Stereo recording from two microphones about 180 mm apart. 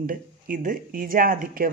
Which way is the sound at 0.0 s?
50° right (ahead or behind).